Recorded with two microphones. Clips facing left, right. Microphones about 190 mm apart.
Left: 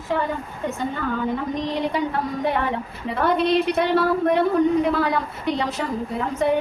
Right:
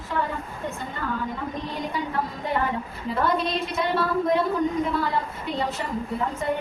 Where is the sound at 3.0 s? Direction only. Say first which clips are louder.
Left 4 dB; 65° left (ahead or behind).